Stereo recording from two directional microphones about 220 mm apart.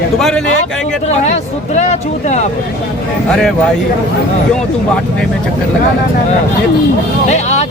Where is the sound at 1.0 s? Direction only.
30° left (ahead or behind).